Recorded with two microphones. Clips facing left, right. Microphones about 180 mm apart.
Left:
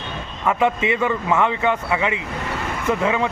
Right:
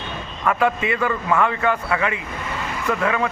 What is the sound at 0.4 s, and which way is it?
Speech, 20° left (ahead or behind).